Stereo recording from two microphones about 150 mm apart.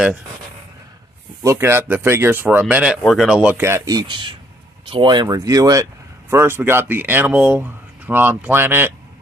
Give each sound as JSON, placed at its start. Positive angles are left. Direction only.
{"t": 1.4, "sound": "speech", "side_deg": -20}